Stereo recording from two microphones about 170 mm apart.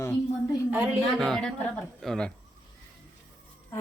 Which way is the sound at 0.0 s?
15° left (ahead or behind).